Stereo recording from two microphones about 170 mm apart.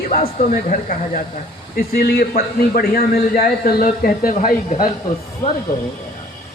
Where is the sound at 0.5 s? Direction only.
50° left (ahead or behind).